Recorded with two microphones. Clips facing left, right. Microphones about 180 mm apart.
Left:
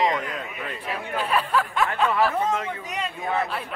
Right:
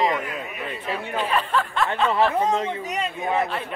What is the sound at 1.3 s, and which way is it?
Speech, 10° left (ahead or behind).